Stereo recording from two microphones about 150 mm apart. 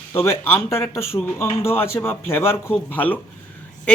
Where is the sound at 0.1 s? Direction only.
15° left (ahead or behind).